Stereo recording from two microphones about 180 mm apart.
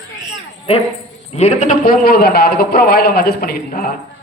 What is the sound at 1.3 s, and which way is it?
A man's voice, 40° left (ahead or behind).